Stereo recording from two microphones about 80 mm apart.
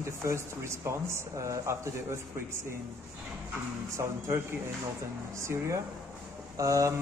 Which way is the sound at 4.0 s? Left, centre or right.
Right.